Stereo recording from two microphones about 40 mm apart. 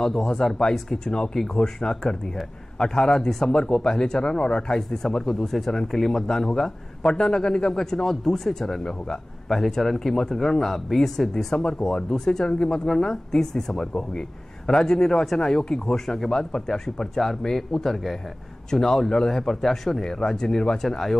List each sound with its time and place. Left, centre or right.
0.0 s speech: centre
9.5 s speech: centre